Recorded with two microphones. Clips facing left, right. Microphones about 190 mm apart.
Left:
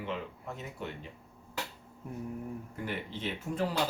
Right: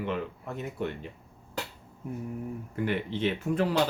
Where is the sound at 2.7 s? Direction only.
70° right (ahead or behind).